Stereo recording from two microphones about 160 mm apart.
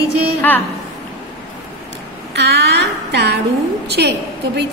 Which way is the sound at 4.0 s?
90° right.